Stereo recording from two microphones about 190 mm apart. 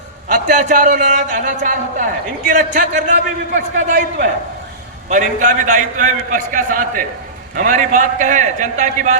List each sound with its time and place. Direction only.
0.3 s a man's voice: 45° right (ahead or behind)